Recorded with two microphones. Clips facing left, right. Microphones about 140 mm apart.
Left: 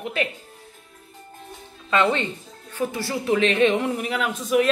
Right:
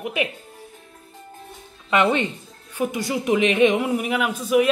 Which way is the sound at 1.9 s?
15° right (ahead or behind).